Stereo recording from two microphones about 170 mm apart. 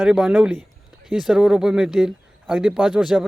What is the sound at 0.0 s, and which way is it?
Speech, 5° right (ahead or behind).